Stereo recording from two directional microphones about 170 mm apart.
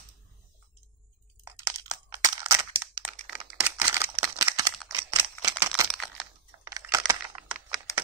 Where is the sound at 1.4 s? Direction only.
20° right (ahead or behind).